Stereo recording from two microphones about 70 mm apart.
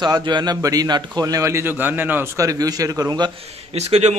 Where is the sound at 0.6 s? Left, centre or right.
Right.